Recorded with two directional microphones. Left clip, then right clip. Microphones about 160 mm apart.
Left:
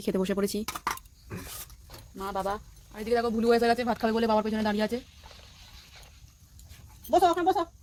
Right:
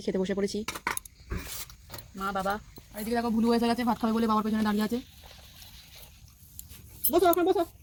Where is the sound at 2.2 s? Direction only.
20° left (ahead or behind).